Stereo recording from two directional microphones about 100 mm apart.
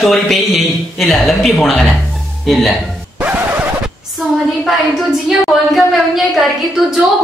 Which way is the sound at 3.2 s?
15° right (ahead or behind).